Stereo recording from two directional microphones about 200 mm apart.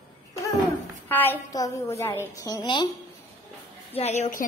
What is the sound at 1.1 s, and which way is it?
A woman's voice, 10° left (ahead or behind).